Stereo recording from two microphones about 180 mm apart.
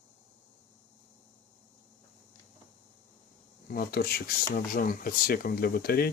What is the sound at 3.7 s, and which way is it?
Speech, 55° left (ahead or behind).